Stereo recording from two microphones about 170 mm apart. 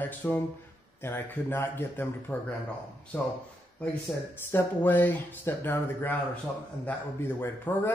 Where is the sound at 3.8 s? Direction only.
10° left (ahead or behind).